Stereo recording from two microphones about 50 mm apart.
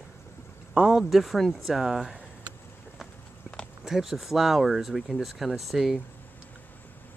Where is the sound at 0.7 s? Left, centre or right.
Centre.